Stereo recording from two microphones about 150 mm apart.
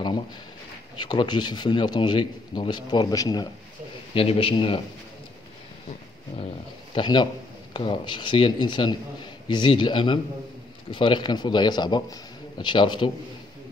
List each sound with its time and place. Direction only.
0.9 s speech: 30° left (ahead or behind)
4.1 s a man's voice: 40° left (ahead or behind)
6.3 s a man's voice: 35° left (ahead or behind)